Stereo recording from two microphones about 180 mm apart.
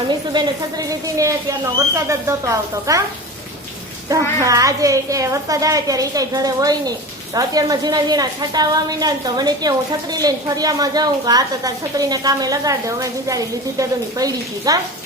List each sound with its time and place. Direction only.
0.3 s a woman's voice: 20° right (ahead or behind)
4.1 s a woman's voice: 20° right (ahead or behind)